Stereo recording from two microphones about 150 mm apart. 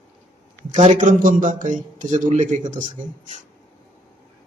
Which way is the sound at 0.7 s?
55° right (ahead or behind).